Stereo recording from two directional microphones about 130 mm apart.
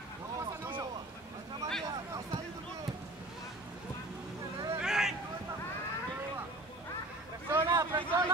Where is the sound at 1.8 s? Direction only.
25° right (ahead or behind).